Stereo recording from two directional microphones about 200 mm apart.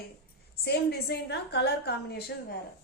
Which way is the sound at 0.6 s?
55° left (ahead or behind).